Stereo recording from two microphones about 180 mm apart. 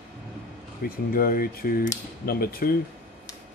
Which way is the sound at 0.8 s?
55° left (ahead or behind).